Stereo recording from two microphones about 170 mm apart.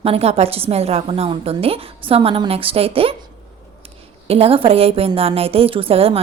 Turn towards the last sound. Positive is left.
turn(degrees=-35)  # may be behind; listen again after turning